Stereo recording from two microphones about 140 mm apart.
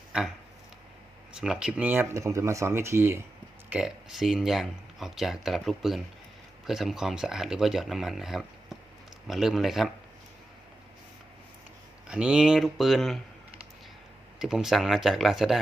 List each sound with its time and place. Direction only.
1.3 s speech: 5° right (ahead or behind)
3.7 s speech: 5° right (ahead or behind)
12.0 s speech: 5° right (ahead or behind)
14.3 s speech: 5° right (ahead or behind)